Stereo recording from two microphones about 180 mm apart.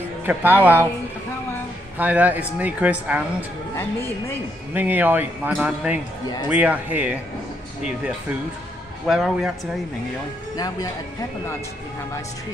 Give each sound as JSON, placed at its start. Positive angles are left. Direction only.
{"t": 0.2, "sound": "speech", "side_deg": -10}
{"t": 2.0, "sound": "speech", "side_deg": -10}
{"t": 4.7, "sound": "speech", "side_deg": -10}
{"t": 9.0, "sound": "a man's voice", "side_deg": 0}
{"t": 10.5, "sound": "speech", "side_deg": 20}